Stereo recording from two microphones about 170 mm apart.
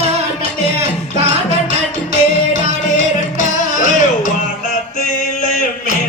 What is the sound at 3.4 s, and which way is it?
Music, 45° left (ahead or behind).